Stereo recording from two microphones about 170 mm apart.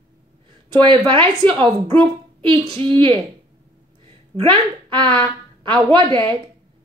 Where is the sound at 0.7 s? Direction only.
30° right (ahead or behind).